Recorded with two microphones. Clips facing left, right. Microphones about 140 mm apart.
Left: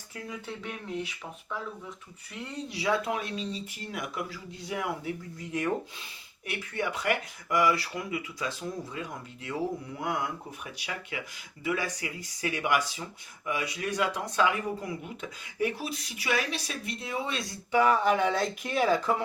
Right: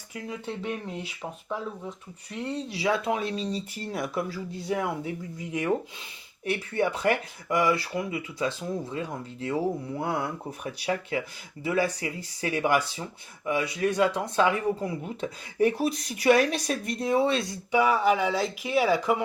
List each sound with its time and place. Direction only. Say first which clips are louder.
2.7 s speech: right 2 dB; 25° right (ahead or behind)
6.4 s speech: right 6 dB; 30° right (ahead or behind)
17.7 s speech: right 1 dB; 10° right (ahead or behind)